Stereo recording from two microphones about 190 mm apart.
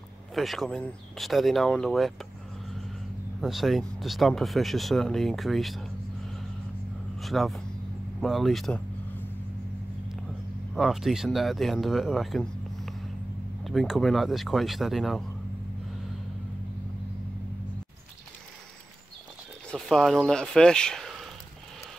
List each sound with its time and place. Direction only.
0.3 s speech: centre (ahead or behind)
3.3 s speech: centre (ahead or behind)
7.2 s speech: centre (ahead or behind)
8.2 s vehicle: centre (ahead or behind)
10.7 s speech: centre (ahead or behind)
19.7 s speech: centre (ahead or behind)